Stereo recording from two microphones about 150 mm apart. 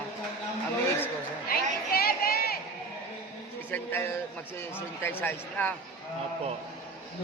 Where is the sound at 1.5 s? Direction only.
90° left.